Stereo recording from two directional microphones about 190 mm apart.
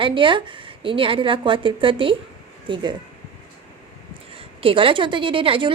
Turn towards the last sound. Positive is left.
turn(degrees=-30)  # may be behind; listen again after turning